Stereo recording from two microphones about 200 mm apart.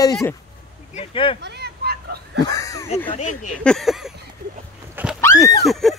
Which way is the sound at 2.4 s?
15° left (ahead or behind).